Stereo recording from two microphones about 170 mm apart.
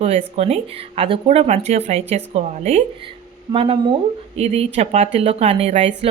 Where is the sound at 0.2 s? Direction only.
40° right (ahead or behind).